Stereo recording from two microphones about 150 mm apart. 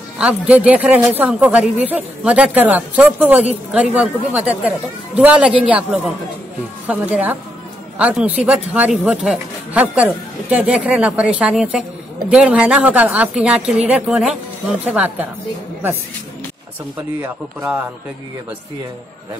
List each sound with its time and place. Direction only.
0.2 s speech: 10° right (ahead or behind)
17.2 s speech: 15° right (ahead or behind)